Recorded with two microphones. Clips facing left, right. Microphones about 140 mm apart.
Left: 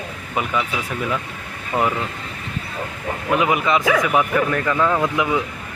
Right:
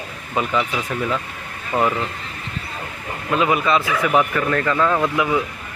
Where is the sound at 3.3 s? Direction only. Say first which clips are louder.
Right 1 dB; 20° left (ahead or behind).